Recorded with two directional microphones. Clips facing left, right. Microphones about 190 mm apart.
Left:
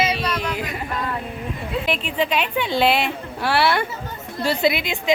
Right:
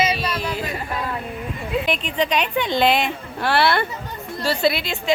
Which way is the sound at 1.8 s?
5° left (ahead or behind).